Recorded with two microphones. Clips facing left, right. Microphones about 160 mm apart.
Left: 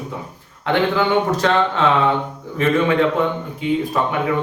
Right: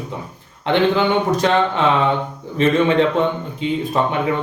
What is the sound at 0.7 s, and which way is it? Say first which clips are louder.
A man's voice: right 1 dB; 20° right (ahead or behind).